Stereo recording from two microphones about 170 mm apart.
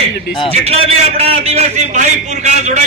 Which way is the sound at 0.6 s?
35° right (ahead or behind).